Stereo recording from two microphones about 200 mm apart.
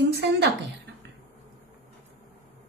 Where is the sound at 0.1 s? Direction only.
55° right (ahead or behind).